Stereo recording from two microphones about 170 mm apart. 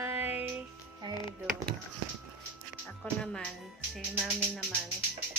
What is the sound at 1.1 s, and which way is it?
Speech, 25° left (ahead or behind).